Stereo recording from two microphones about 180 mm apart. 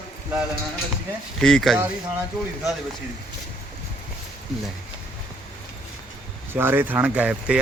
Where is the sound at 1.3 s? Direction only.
5° left (ahead or behind).